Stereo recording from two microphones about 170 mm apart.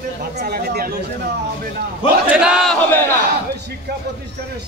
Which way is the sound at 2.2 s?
5° right (ahead or behind).